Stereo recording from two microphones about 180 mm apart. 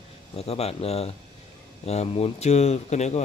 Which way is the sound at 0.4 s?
35° left (ahead or behind).